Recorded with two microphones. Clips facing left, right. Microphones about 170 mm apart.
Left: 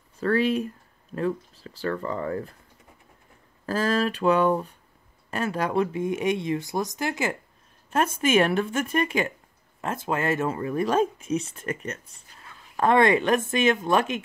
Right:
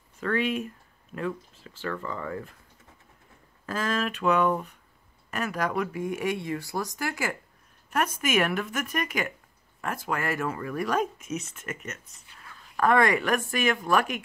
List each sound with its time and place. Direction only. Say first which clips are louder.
0.2 s speech: left 5 dB; 35° left (ahead or behind)
3.6 s speech: left 5 dB; 35° left (ahead or behind)